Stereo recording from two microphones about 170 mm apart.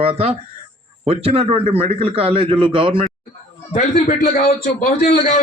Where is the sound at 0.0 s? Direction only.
35° right (ahead or behind).